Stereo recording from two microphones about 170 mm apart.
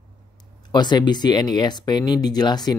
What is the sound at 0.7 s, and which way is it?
Speech, 25° left (ahead or behind).